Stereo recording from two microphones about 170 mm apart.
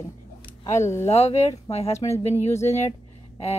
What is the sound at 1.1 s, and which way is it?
Speech, 35° left (ahead or behind).